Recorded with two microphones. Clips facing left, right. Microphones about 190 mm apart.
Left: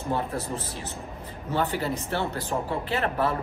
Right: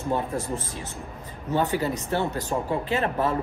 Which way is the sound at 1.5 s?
15° right (ahead or behind).